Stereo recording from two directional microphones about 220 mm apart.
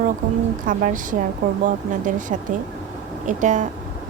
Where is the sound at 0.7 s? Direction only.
40° right (ahead or behind).